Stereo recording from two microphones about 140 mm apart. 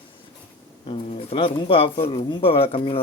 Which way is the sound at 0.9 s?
40° left (ahead or behind).